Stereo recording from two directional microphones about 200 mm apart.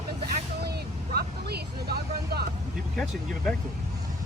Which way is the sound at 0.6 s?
55° right (ahead or behind).